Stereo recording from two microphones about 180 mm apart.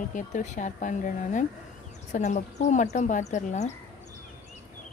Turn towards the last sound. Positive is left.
turn(degrees=40)  # may be behind; listen again after turning